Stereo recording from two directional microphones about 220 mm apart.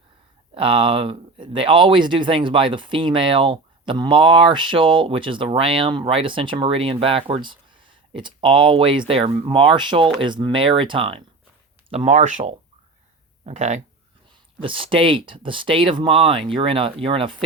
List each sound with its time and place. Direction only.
0.5 s speech: 25° right (ahead or behind)